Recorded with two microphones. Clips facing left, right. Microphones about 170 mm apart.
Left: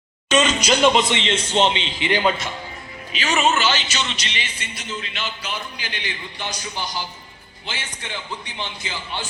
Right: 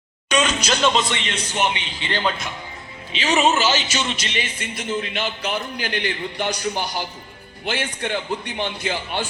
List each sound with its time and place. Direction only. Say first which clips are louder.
0.3 s speech: left 2 dB; 10° right (ahead or behind)
0.6 s a man's voice: left 3 dB; 10° left (ahead or behind)
3.1 s speech: right 2 dB; 30° right (ahead or behind)
3.5 s speech: right 1 dB; 40° right (ahead or behind)
3.8 s speech: right 2 dB; 10° right (ahead or behind)
4.1 s a man's voice: right 4 dB; 50° right (ahead or behind)